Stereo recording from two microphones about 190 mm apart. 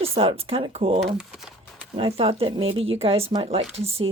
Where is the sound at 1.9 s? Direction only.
30° right (ahead or behind).